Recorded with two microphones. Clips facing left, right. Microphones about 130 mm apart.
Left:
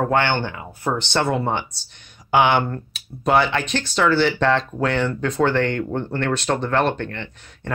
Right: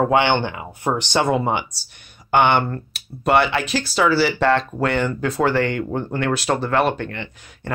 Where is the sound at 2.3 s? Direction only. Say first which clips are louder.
Right 1 dB; centre (ahead or behind).